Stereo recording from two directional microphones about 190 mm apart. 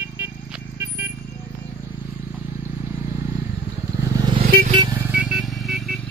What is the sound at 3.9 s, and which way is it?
Vehicle, 20° right (ahead or behind).